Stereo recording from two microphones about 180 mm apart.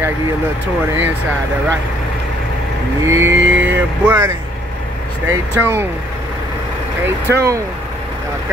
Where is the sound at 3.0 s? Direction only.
15° right (ahead or behind).